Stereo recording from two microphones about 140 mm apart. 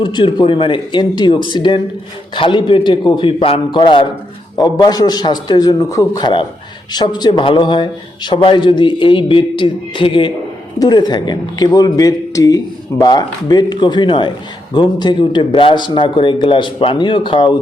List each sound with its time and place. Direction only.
0.0 s a man's voice: 35° left (ahead or behind)